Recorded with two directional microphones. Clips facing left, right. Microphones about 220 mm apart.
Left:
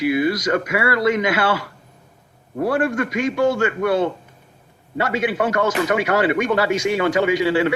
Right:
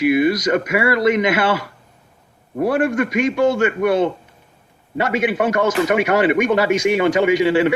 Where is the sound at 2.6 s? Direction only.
15° right (ahead or behind).